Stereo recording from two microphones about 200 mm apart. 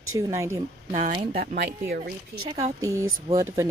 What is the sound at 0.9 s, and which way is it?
Speech, 35° right (ahead or behind).